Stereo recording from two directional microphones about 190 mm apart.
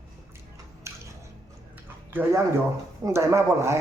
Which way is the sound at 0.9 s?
15° right (ahead or behind).